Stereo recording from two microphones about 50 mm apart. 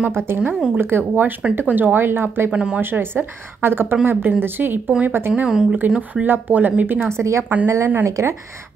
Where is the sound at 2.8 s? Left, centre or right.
Right.